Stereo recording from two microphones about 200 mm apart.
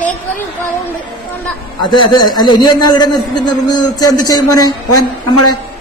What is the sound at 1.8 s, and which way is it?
A man's voice, 25° left (ahead or behind).